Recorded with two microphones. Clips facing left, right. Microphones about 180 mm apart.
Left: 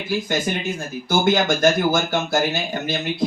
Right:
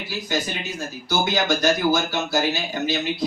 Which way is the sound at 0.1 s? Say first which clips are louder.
Left 5 dB; 50° left (ahead or behind).